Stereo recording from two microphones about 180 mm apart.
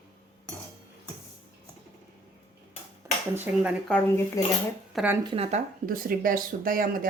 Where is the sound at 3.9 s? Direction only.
10° left (ahead or behind).